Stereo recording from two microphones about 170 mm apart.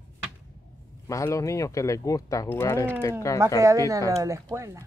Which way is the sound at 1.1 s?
20° left (ahead or behind).